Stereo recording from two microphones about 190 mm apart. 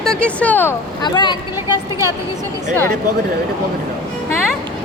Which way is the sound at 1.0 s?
25° left (ahead or behind).